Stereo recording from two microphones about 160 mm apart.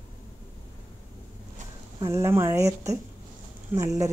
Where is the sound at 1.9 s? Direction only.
20° right (ahead or behind).